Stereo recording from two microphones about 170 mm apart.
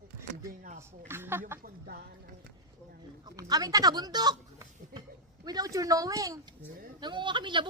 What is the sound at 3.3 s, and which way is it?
Speech, 20° right (ahead or behind).